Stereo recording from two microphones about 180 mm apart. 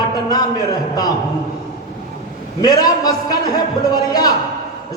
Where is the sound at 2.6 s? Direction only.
20° left (ahead or behind).